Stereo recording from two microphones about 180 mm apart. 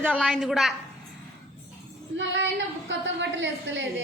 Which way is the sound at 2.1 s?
85° right.